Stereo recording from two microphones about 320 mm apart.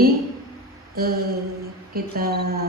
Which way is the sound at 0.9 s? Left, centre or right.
Right.